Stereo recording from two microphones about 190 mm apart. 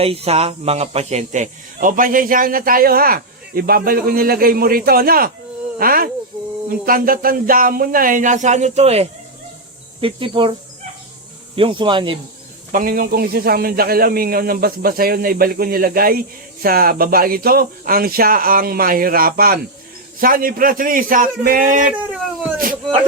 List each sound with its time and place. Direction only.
0.0 s a man's voice: 30° right (ahead or behind)
11.5 s speech: 25° right (ahead or behind)
12.7 s a man's voice: 50° right (ahead or behind)